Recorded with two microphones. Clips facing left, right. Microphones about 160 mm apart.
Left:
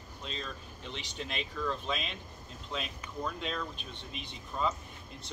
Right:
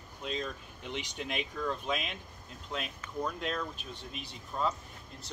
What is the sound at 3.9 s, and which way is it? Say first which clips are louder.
Speech: even; 40° right (ahead or behind).